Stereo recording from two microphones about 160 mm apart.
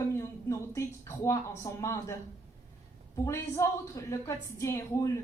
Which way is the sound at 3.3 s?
20° left (ahead or behind).